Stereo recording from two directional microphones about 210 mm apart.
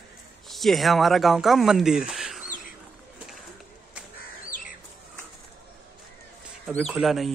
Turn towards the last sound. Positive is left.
turn(degrees=0)  # may be behind; listen again after turning